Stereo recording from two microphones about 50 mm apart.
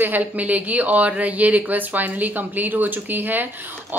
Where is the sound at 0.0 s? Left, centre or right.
Right.